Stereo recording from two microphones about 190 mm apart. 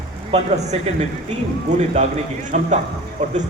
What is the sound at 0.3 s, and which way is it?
Speech, 35° right (ahead or behind).